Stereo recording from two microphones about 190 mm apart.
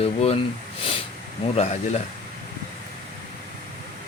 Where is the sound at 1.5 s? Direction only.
35° left (ahead or behind).